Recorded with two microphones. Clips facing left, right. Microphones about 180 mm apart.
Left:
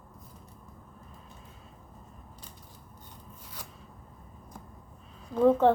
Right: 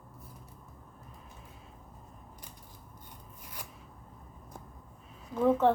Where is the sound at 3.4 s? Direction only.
10° right (ahead or behind).